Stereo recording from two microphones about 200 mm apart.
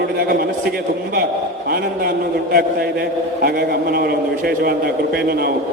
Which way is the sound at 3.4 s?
50° right (ahead or behind).